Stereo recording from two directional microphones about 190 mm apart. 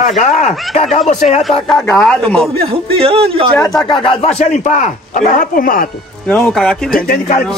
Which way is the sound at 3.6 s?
20° left (ahead or behind).